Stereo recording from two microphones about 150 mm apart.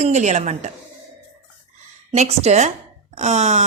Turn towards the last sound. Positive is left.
turn(degrees=-50)  # may be behind; listen again after turning